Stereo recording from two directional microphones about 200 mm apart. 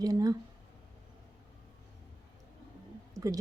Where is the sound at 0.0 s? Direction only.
20° right (ahead or behind).